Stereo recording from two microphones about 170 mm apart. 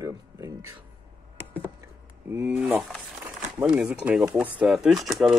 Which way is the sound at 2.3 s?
10° right (ahead or behind).